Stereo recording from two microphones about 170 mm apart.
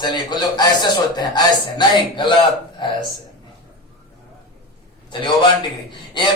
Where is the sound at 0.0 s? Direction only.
25° left (ahead or behind).